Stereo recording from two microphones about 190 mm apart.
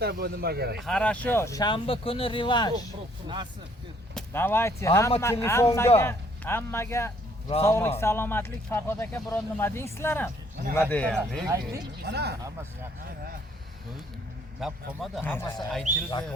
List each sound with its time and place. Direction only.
0.0 s a man's voice: 55° right (ahead or behind)
0.8 s speech: 5° left (ahead or behind); by 2.9 s 20° left (ahead or behind)
3.2 s speech: 25° right (ahead or behind)
4.1 s speech: 10° left (ahead or behind)
11.4 s speech: 15° right (ahead or behind)
12.0 s a man's voice: 60° right (ahead or behind)
14.6 s speech: centre (ahead or behind)
15.2 s speech: 10° left (ahead or behind)
15.5 s speech: centre (ahead or behind)